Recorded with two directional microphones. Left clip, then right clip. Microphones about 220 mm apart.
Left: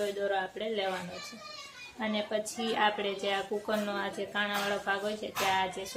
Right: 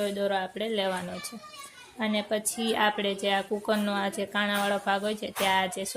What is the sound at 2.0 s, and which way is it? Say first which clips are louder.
Speech: right 3 dB; 40° right (ahead or behind).